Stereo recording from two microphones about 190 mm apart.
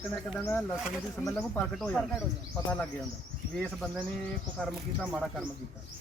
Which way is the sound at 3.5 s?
Centre (ahead or behind).